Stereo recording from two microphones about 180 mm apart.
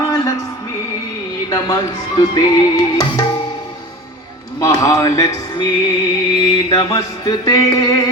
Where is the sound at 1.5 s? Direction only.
20° left (ahead or behind).